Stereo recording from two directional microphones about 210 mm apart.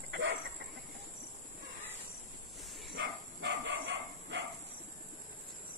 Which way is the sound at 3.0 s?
55° right (ahead or behind).